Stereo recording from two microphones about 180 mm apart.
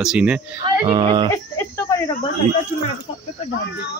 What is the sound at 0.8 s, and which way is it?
Speech, 25° right (ahead or behind).